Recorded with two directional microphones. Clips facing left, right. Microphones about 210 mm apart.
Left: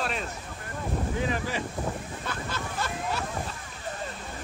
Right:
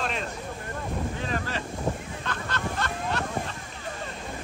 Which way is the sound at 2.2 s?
5° left (ahead or behind).